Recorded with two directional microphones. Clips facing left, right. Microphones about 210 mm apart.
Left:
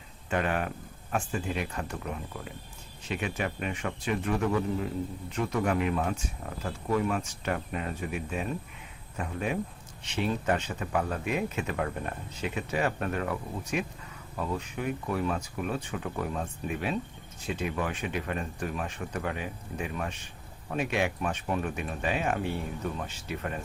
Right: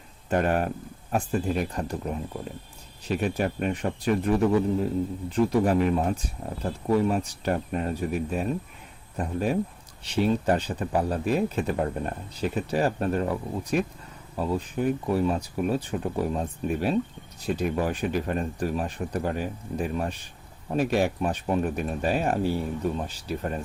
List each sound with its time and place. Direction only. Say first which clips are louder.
0.3 s speech: right 5 dB; 40° right (ahead or behind)